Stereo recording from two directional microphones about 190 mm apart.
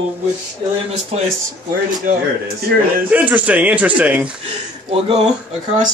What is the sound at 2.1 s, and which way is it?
Speech, 45° right (ahead or behind).